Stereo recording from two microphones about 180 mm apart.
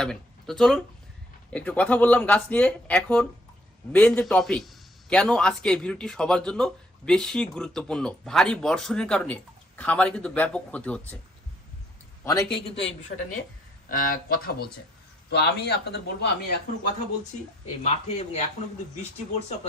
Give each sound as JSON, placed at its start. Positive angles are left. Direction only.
{"t": 0.0, "sound": "a man's voice", "side_deg": 5}
{"t": 12.2, "sound": "a man's voice", "side_deg": 20}
{"t": 13.0, "sound": "speech", "side_deg": 40}
{"t": 15.3, "sound": "a man's voice", "side_deg": 70}
{"t": 17.8, "sound": "speech", "side_deg": 40}